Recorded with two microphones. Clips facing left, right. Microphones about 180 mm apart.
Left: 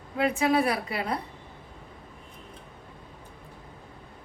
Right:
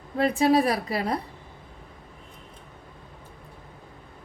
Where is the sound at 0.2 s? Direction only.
35° right (ahead or behind).